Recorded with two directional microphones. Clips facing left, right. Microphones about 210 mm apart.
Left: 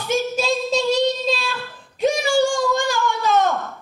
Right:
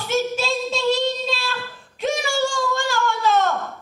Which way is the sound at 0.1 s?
15° left (ahead or behind).